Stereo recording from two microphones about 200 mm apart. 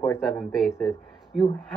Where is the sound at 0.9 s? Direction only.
15° left (ahead or behind).